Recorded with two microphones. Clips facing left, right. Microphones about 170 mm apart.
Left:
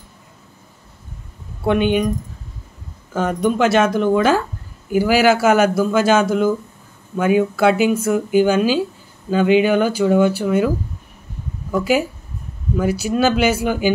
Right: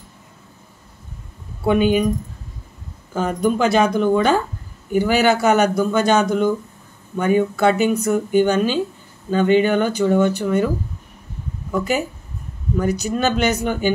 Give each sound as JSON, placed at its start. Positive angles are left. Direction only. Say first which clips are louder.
{"t": 1.6, "sound": "speech", "louder": "even", "side_deg": 0}
{"t": 3.1, "sound": "speech", "louder": "left 1 dB", "side_deg": 0}
{"t": 11.7, "sound": "speech", "louder": "left 3 dB", "side_deg": 5}